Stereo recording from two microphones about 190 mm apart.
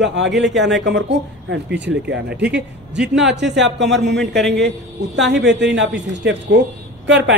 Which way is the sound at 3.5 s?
70° right (ahead or behind).